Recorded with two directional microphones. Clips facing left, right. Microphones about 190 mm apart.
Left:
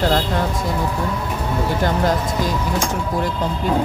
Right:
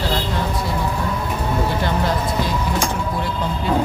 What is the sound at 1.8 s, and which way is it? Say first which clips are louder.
Speech: left 2 dB; 45° left (ahead or behind).